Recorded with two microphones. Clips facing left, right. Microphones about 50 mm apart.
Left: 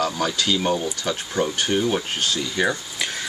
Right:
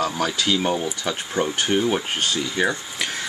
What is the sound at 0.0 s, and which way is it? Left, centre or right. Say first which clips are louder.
Speech: even; centre.